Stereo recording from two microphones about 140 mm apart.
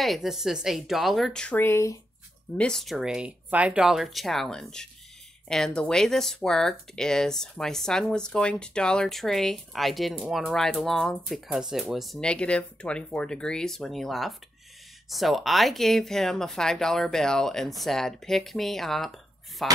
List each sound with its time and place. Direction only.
0.0 s speech: centre (ahead or behind); by 2.0 s 20° left (ahead or behind)
2.5 s speech: 5° left (ahead or behind)